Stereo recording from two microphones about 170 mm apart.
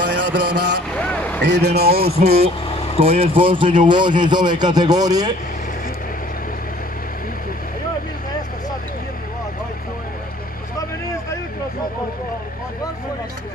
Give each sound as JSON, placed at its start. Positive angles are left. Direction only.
{"t": 0.0, "sound": "a sound", "side_deg": -90}
{"t": 0.9, "sound": "vehicle", "side_deg": 5}
{"t": 1.4, "sound": "speech", "side_deg": -80}
{"t": 2.0, "sound": "speech", "side_deg": -35}